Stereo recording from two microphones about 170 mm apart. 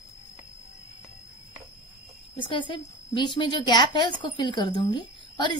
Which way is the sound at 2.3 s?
30° left (ahead or behind).